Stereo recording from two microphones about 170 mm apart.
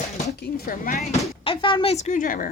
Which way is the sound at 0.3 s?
65° left (ahead or behind).